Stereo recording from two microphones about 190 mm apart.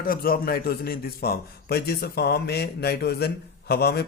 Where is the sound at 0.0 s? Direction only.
50° left (ahead or behind).